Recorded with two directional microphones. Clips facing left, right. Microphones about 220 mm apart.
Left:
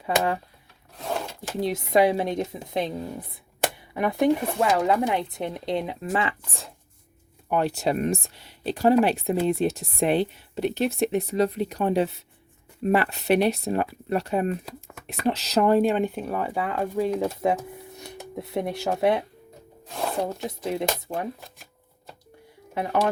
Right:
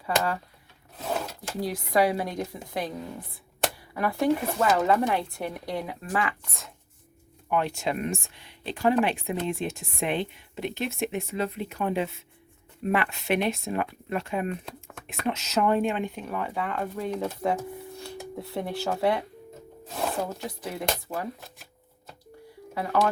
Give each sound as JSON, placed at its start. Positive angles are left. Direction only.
{"t": 0.0, "sound": "speech", "side_deg": 20}
{"t": 0.9, "sound": "filing", "side_deg": 0}
{"t": 1.5, "sound": "speech", "side_deg": 25}
{"t": 4.4, "sound": "speech", "side_deg": 0}
{"t": 4.9, "sound": "speech", "side_deg": 15}
{"t": 14.6, "sound": "a sound", "side_deg": 5}
{"t": 15.3, "sound": "speech", "side_deg": 35}
{"t": 17.4, "sound": "speech", "side_deg": 20}
{"t": 19.9, "sound": "a sound", "side_deg": -5}
{"t": 20.7, "sound": "speech", "side_deg": 25}
{"t": 22.7, "sound": "speech", "side_deg": 20}